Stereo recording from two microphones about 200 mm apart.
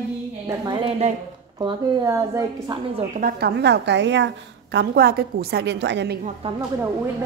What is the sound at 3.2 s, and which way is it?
A woman's voice, 55° right (ahead or behind).